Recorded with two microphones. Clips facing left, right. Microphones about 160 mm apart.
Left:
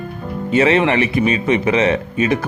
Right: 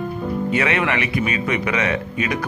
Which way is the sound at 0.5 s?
30° left (ahead or behind).